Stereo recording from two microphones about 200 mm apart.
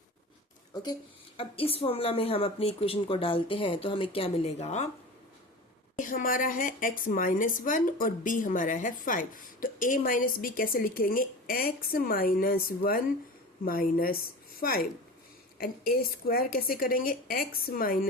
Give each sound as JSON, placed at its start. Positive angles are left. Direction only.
{"t": 0.7, "sound": "a woman's voice", "side_deg": 20}
{"t": 6.0, "sound": "a woman's voice", "side_deg": 45}